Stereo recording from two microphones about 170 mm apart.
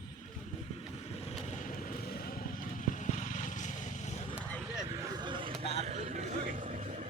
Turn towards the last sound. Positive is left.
turn(degrees=-40)  # may be behind; listen again after turning